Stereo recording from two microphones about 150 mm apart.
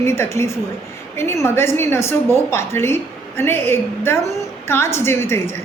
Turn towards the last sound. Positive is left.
turn(degrees=15)  # may be behind; listen again after turning